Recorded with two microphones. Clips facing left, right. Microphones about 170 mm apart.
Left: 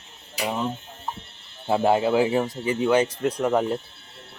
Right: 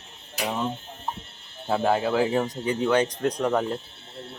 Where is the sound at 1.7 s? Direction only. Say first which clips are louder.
Left 3 dB; 15° left (ahead or behind).